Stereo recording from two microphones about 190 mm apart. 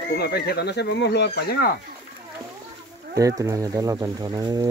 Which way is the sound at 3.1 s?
20° right (ahead or behind).